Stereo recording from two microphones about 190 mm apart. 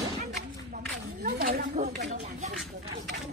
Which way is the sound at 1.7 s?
40° right (ahead or behind).